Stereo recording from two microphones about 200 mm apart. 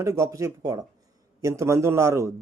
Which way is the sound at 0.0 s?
15° right (ahead or behind).